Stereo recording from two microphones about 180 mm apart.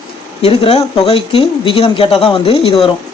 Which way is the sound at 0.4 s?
35° left (ahead or behind).